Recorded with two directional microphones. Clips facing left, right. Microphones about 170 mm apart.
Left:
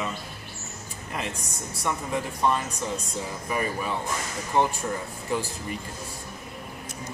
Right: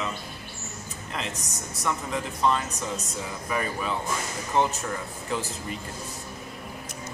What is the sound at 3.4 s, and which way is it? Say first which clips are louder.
Speech: even; 10° left (ahead or behind).